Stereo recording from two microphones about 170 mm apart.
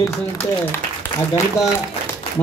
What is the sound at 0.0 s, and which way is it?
Speech, 15° left (ahead or behind).